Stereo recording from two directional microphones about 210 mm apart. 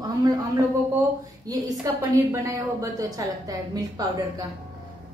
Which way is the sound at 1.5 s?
15° right (ahead or behind).